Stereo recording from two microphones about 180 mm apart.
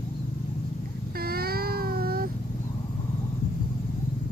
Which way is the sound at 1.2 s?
60° right (ahead or behind).